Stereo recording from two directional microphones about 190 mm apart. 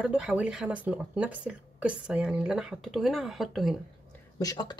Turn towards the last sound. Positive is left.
turn(degrees=20)  # may be behind; listen again after turning